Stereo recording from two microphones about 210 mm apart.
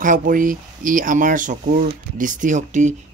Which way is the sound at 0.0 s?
40° right (ahead or behind).